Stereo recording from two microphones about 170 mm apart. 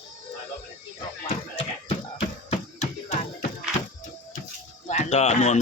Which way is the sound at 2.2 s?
35° left (ahead or behind).